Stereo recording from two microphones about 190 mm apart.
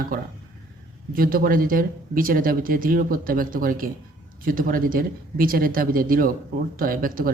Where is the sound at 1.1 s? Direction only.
50° right (ahead or behind).